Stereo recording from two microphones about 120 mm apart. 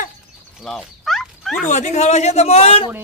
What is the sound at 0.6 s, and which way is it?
Dog, centre (ahead or behind).